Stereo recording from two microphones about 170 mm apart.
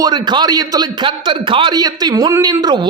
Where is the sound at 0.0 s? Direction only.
25° right (ahead or behind).